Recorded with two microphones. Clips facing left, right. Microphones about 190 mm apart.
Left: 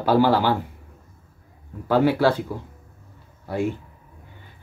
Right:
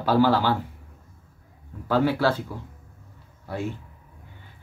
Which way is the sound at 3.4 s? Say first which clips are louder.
Left 6 dB; 15° left (ahead or behind).